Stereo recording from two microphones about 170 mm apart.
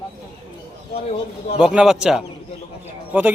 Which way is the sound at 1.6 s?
5° right (ahead or behind).